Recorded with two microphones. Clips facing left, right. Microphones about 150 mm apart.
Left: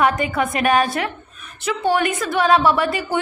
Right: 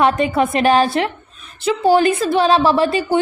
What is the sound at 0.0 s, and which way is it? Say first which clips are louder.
A woman's voice: right 4 dB; 25° right (ahead or behind).